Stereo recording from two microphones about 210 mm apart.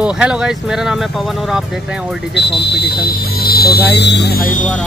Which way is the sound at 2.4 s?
55° left (ahead or behind).